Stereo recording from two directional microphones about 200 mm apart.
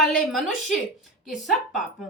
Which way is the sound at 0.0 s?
Centre (ahead or behind).